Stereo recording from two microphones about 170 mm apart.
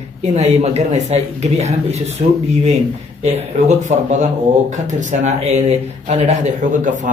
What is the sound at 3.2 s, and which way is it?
Speech, 40° right (ahead or behind).